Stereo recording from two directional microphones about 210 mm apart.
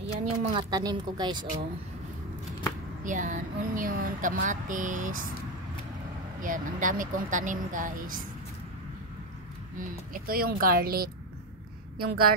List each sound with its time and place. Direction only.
0.5 s speech: 20° right (ahead or behind)
3.0 s speech: 40° right (ahead or behind)
6.4 s speech: 40° right (ahead or behind)
9.8 s speech: 40° right (ahead or behind)